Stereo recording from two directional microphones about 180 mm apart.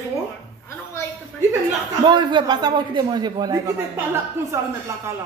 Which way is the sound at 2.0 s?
25° right (ahead or behind).